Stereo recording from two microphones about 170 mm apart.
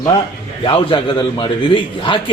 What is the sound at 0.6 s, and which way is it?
A man's voice, 30° left (ahead or behind).